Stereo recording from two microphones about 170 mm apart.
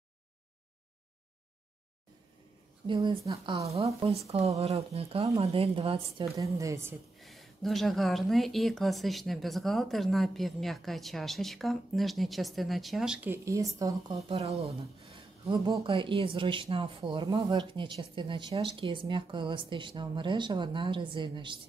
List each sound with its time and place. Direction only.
2.9 s a woman's voice: 25° right (ahead or behind)
6.3 s speech: 20° right (ahead or behind)
7.2 s speech: centre (ahead or behind)
13.3 s speech: 20° right (ahead or behind)
14.3 s a woman's voice: 40° right (ahead or behind)